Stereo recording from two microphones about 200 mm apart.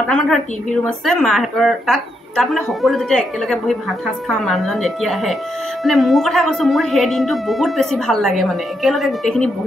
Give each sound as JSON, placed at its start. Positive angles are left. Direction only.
{"t": 0.1, "sound": "a woman's voice", "side_deg": 5}